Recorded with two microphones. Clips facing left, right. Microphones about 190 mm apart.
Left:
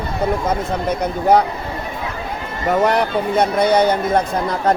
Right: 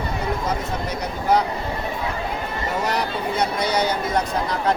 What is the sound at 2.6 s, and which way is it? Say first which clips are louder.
Speech: left 9 dB; 55° left (ahead or behind).